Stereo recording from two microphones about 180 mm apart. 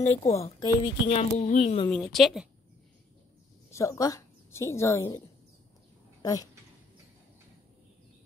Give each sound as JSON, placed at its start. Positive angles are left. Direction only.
{"t": 0.0, "sound": "a woman's voice", "side_deg": 40}
{"t": 1.4, "sound": "a woman's voice", "side_deg": 40}
{"t": 1.9, "sound": "a woman's voice", "side_deg": 5}
{"t": 3.7, "sound": "a woman's voice", "side_deg": 15}
{"t": 6.2, "sound": "a woman's voice", "side_deg": 20}